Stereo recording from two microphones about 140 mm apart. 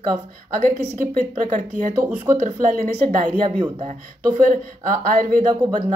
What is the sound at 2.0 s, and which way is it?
Speech, 10° right (ahead or behind).